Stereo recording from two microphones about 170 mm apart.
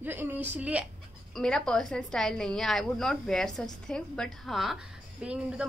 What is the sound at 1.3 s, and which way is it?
A woman's voice, 5° left (ahead or behind).